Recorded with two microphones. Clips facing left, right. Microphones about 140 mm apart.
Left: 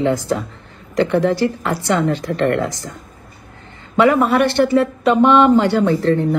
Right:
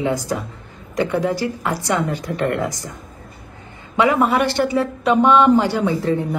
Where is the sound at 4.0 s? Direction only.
15° right (ahead or behind).